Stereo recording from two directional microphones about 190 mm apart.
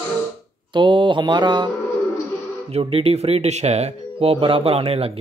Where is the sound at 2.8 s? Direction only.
30° right (ahead or behind).